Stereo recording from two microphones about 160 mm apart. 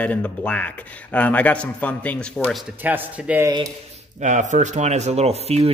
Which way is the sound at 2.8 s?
10° right (ahead or behind).